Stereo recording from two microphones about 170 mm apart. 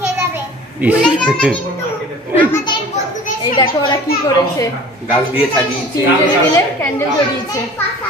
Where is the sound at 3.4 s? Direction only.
30° left (ahead or behind).